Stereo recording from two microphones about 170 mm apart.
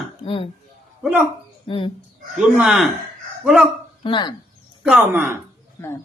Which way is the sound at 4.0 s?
30° left (ahead or behind).